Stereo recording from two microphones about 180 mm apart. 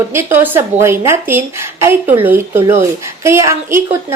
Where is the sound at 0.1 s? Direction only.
15° right (ahead or behind).